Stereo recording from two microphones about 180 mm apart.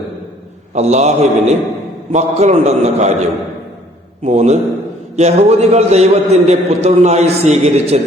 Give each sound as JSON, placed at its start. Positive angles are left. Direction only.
{"t": 0.7, "sound": "a man's voice", "side_deg": -40}
{"t": 4.2, "sound": "a man's voice", "side_deg": -40}